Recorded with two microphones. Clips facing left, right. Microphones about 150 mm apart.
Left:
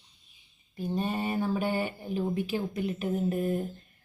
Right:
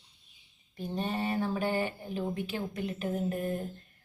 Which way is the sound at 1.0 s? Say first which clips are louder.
Left 1 dB; 15° left (ahead or behind).